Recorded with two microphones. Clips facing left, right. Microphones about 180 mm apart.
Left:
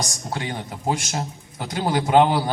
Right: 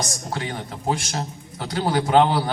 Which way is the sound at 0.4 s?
15° left (ahead or behind).